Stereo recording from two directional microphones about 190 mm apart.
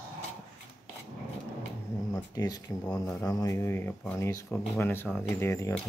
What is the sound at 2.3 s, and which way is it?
Speech, 20° left (ahead or behind).